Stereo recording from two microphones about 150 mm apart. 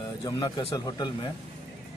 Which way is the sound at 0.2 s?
35° left (ahead or behind).